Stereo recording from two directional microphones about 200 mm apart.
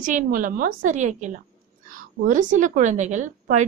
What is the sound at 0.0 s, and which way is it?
A woman's voice, 40° right (ahead or behind).